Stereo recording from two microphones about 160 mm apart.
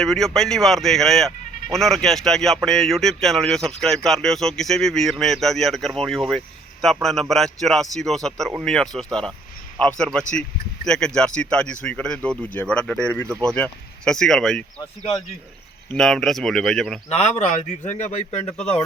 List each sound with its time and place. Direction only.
0.0 s speech: 5° left (ahead or behind)
15.9 s speech: 5° left (ahead or behind)
17.2 s a man's voice: 45° left (ahead or behind)